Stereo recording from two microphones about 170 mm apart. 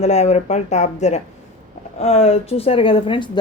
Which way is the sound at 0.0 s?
40° left (ahead or behind).